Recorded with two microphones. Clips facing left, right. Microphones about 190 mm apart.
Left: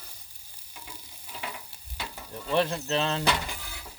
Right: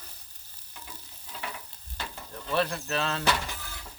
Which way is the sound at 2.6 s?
20° left (ahead or behind).